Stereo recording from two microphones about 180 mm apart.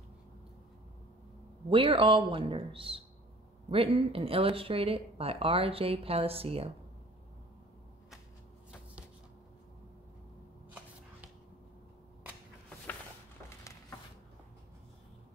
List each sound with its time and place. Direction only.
1.7 s a man's voice: 30° right (ahead or behind)